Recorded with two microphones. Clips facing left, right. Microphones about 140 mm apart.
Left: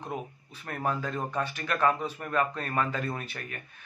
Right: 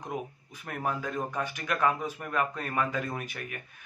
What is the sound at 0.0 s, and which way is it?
Speech, 15° right (ahead or behind).